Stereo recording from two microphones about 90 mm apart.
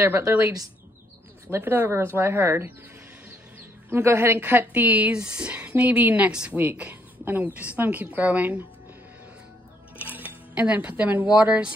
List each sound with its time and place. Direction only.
0.0 s speech: 25° right (ahead or behind)
1.5 s speech: 20° right (ahead or behind)
3.9 s a woman's voice: 30° right (ahead or behind)
10.1 s speech: 20° right (ahead or behind)